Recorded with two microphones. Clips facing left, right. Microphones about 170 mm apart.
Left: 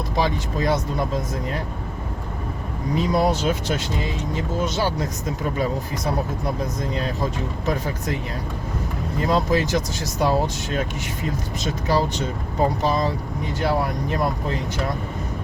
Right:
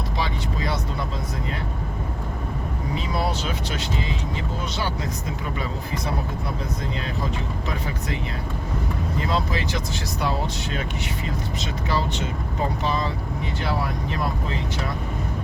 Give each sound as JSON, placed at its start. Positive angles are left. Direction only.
{"t": 0.2, "sound": "speech", "side_deg": 45}
{"t": 3.2, "sound": "speech", "side_deg": 45}
{"t": 9.2, "sound": "speech", "side_deg": 45}
{"t": 11.6, "sound": "speech", "side_deg": 40}